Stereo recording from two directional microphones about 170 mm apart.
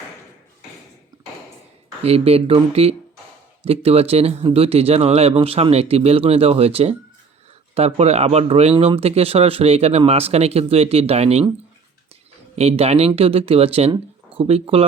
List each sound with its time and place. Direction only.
2.0 s speech: 35° right (ahead or behind)
12.5 s speech: 35° right (ahead or behind)